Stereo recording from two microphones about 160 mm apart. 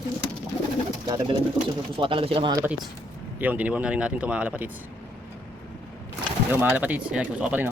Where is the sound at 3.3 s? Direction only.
10° right (ahead or behind).